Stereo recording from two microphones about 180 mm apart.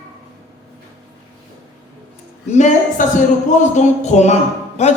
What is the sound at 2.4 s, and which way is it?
Speech, 40° left (ahead or behind).